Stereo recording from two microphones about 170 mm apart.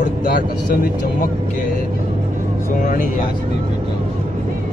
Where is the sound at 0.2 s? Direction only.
50° left (ahead or behind).